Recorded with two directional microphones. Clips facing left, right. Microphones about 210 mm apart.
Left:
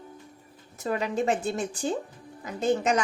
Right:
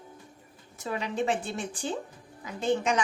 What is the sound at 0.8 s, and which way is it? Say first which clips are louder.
A woman's voice: left 3 dB; 40° left (ahead or behind).